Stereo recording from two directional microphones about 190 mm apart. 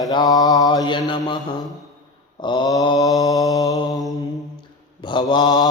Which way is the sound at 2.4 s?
25° left (ahead or behind).